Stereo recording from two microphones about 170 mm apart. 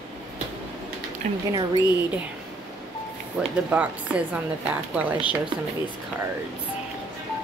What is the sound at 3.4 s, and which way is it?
Speech, 10° right (ahead or behind).